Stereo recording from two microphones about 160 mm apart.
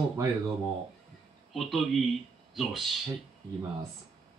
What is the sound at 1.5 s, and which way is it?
Speech, centre (ahead or behind).